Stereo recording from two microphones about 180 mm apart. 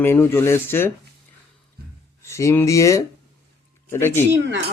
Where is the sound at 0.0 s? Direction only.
10° left (ahead or behind).